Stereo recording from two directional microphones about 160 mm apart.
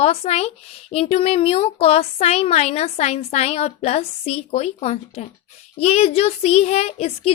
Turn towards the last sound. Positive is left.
turn(degrees=40)  # may be behind; listen again after turning